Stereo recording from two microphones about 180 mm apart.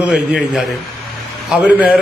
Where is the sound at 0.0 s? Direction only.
5° right (ahead or behind).